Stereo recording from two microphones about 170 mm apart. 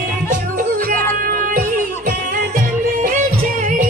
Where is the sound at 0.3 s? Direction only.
55° right (ahead or behind).